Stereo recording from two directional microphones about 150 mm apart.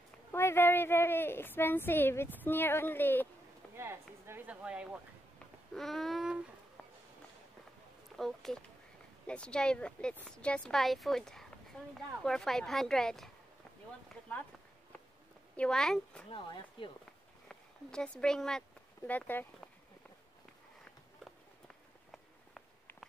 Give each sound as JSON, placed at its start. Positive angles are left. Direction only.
{"t": 0.3, "sound": "a woman's voice", "side_deg": 15}
{"t": 3.7, "sound": "speech", "side_deg": -15}
{"t": 8.2, "sound": "speech", "side_deg": 0}
{"t": 15.5, "sound": "speech", "side_deg": 5}
{"t": 16.3, "sound": "speech", "side_deg": 35}
{"t": 17.5, "sound": "a woman's voice", "side_deg": 5}